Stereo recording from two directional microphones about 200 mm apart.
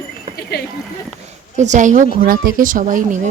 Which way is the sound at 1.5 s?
35° right (ahead or behind).